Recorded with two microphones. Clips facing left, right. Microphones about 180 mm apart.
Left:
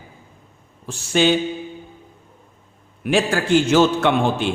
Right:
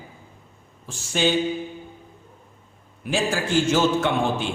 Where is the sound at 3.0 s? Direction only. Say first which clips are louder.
Left 5 dB; 70° left (ahead or behind).